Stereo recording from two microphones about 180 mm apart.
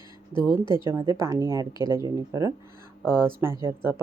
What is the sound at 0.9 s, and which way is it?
Speech, 15° right (ahead or behind).